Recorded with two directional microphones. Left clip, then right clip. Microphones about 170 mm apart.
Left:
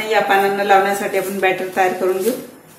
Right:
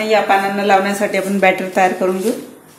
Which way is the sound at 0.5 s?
35° right (ahead or behind).